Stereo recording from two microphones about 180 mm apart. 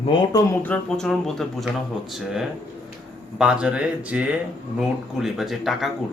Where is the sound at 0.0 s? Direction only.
30° left (ahead or behind).